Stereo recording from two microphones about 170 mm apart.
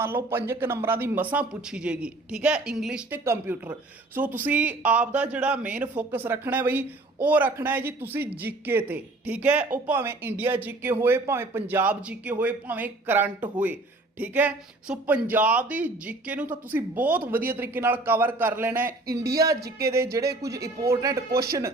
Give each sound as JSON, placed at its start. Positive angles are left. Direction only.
{"t": 0.0, "sound": "speech", "side_deg": -15}
{"t": 19.2, "sound": "speech", "side_deg": -65}
{"t": 19.8, "sound": "speech", "side_deg": -15}
{"t": 21.2, "sound": "speech", "side_deg": -65}